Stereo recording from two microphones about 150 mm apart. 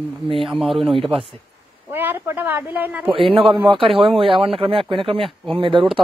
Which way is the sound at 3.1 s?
35° right (ahead or behind).